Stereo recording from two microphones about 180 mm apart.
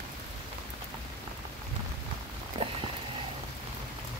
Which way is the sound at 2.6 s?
30° right (ahead or behind).